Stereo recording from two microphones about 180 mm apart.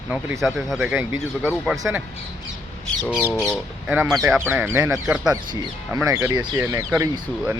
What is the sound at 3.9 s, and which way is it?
Speech, 10° right (ahead or behind).